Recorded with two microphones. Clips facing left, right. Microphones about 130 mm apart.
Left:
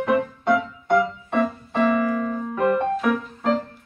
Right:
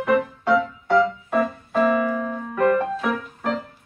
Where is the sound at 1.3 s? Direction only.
Centre (ahead or behind).